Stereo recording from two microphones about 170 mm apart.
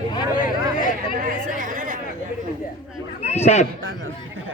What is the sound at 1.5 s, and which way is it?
Chatter, 50° right (ahead or behind).